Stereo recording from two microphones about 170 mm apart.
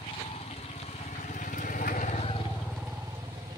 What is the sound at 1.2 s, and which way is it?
Vehicle, 50° left (ahead or behind).